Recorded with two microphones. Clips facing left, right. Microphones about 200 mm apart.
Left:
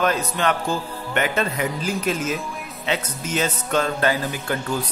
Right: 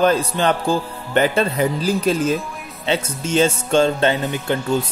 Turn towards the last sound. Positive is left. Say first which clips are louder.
# right 5 dB
turn(degrees=-25)  # may be behind; listen again after turning